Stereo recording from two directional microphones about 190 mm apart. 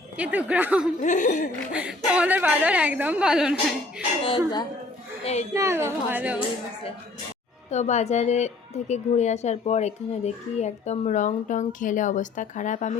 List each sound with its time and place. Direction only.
0.2 s a woman's voice: 5° right (ahead or behind)
1.0 s a woman's voice: 40° left (ahead or behind)
1.7 s a woman's voice: 5° right (ahead or behind)
5.2 s speech: 35° left (ahead or behind)
5.5 s a woman's voice: 15° right (ahead or behind)
7.7 s a woman's voice: 35° left (ahead or behind)